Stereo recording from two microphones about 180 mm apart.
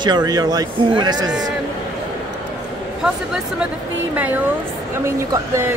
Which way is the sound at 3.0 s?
5° right (ahead or behind).